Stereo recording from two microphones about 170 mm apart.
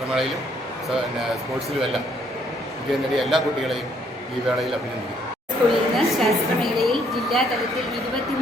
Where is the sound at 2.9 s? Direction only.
Centre (ahead or behind).